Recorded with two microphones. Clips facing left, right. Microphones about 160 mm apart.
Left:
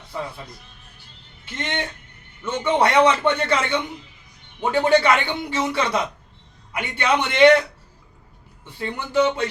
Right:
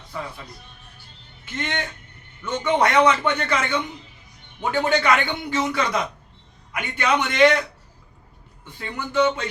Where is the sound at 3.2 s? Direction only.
30° left (ahead or behind).